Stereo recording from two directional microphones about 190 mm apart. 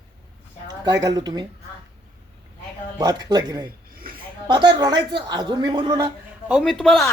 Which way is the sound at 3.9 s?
50° right (ahead or behind).